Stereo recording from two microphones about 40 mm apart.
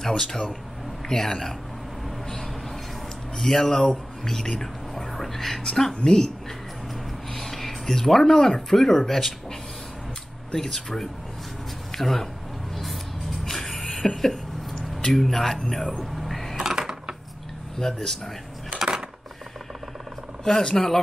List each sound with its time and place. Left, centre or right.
0.0 s a man's voice: centre
3.3 s a man's voice: centre
7.3 s speech: centre
10.5 s a man's voice: centre
13.4 s music: centre
14.2 s a sound: centre
14.8 s a sound: centre
15.1 s a man's voice: centre
16.0 s a sound: centre
16.5 s a sound: centre
17.7 s a man's voice: centre
20.7 s a man's voice: centre